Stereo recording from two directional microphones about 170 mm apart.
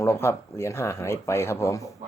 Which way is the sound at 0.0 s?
15° left (ahead or behind).